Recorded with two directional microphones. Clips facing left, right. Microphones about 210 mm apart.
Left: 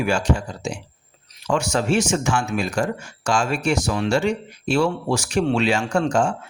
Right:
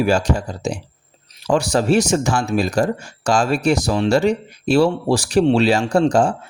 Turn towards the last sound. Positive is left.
turn(degrees=-35)  # may be behind; listen again after turning